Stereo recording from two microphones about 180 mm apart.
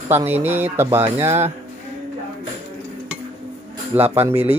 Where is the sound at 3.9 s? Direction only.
10° right (ahead or behind).